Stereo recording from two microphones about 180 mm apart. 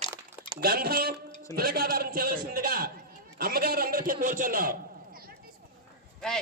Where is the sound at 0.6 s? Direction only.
55° right (ahead or behind).